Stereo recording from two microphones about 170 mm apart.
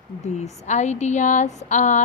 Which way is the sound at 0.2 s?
40° left (ahead or behind).